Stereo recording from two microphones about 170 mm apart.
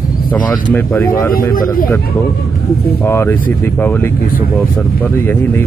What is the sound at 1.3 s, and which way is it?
Speech, 60° left (ahead or behind).